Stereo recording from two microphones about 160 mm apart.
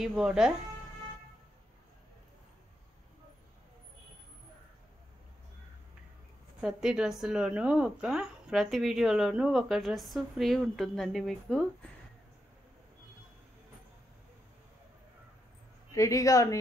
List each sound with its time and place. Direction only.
0.0 s speech: 5° right (ahead or behind)
6.6 s speech: 5° right (ahead or behind)
15.9 s speech: 20° left (ahead or behind)